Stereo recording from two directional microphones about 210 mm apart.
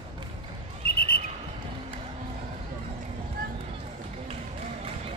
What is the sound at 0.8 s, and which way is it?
Bird, 45° left (ahead or behind).